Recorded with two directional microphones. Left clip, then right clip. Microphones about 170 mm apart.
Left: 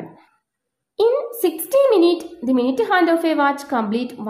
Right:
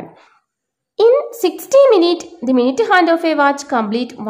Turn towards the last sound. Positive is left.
turn(degrees=-15)  # may be behind; listen again after turning